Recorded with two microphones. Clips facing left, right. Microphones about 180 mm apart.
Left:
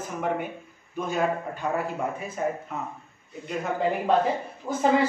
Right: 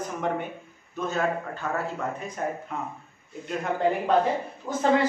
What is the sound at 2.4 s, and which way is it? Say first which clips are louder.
Speech: left 2 dB; 5° left (ahead or behind).